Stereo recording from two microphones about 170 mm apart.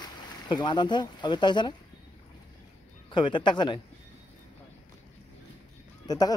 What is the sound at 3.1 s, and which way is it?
Speech, 25° left (ahead or behind).